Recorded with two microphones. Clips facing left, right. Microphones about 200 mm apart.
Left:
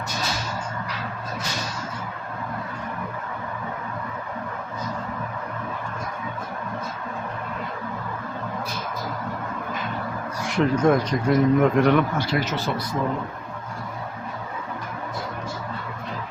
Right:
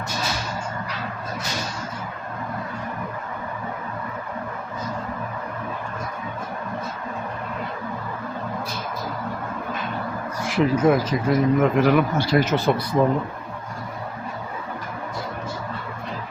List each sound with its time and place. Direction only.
10.4 s speech: 5° right (ahead or behind)
12.1 s speech: 35° right (ahead or behind)
12.4 s speech: 50° right (ahead or behind)